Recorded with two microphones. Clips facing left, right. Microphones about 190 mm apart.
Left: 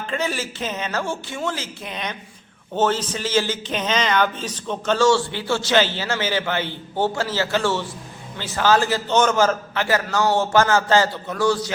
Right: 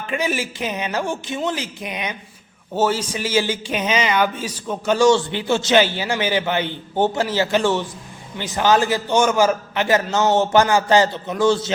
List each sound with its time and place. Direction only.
0.1 s a man's voice: 15° right (ahead or behind)